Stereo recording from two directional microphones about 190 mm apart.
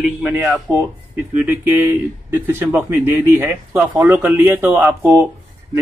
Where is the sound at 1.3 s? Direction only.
10° right (ahead or behind).